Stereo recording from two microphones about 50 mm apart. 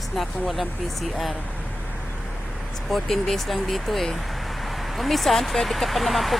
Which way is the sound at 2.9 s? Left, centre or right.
Centre.